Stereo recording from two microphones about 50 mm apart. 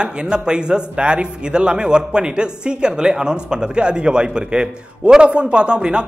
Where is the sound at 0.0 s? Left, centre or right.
Centre.